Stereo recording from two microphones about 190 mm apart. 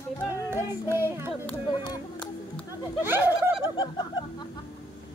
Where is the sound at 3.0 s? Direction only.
10° right (ahead or behind).